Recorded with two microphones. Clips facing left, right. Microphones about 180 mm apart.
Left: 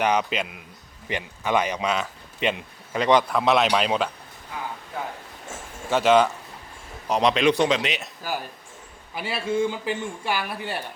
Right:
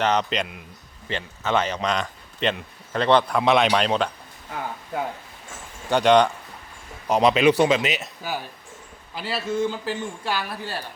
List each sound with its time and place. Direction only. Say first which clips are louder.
0.0 s speech: even; 10° left (ahead or behind)
5.9 s speech: right 1 dB; 5° left (ahead or behind)
9.1 s a woman's voice: left 1 dB; 10° left (ahead or behind)